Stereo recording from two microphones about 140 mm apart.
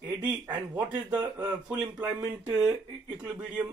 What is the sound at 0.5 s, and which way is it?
Speech, 15° right (ahead or behind).